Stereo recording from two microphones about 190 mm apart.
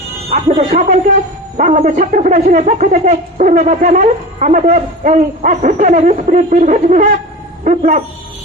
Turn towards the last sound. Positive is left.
turn(degrees=-40)  # may be behind; listen again after turning